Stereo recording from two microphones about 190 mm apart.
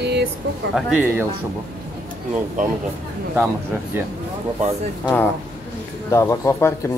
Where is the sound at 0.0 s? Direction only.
60° right (ahead or behind).